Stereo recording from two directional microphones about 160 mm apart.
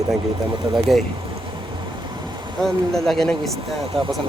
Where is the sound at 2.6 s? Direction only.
Centre (ahead or behind).